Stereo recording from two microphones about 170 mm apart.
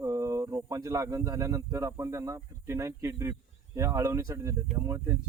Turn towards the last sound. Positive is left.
turn(degrees=-15)  # may be behind; listen again after turning